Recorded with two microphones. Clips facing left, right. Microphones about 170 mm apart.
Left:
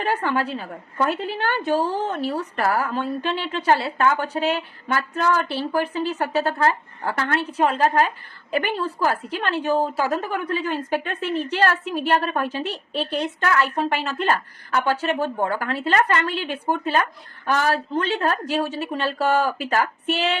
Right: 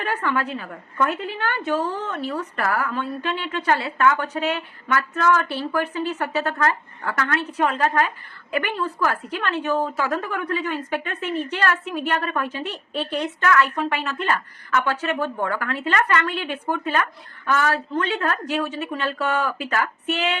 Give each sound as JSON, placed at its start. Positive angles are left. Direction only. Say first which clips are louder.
{"t": 0.0, "sound": "a woman's voice", "louder": "left 2 dB", "side_deg": 30}